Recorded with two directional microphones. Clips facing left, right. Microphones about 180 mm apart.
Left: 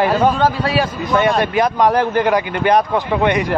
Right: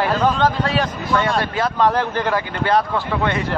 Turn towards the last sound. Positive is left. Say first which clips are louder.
# left 5 dB
turn(degrees=15)  # may be behind; listen again after turning